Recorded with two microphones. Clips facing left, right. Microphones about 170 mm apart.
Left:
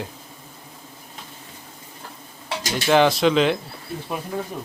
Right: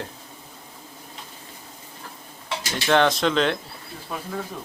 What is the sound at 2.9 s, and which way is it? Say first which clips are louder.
Speech: left 3 dB; 5° left (ahead or behind).